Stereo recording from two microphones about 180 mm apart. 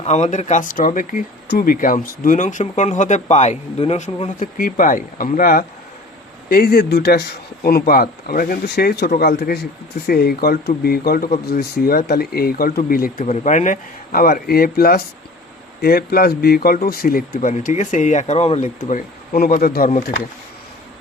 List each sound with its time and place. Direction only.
0.0 s speech: 40° left (ahead or behind); by 13.2 s 55° left (ahead or behind)
13.2 s speech: 40° left (ahead or behind); by 17.2 s 55° left (ahead or behind)
17.3 s speech: 40° left (ahead or behind)
19.9 s speech: 45° left (ahead or behind)